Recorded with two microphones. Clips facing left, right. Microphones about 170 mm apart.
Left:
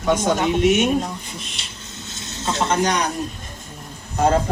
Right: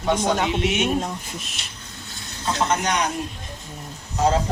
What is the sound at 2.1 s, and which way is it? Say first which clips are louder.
Speech: left 1 dB; 25° left (ahead or behind).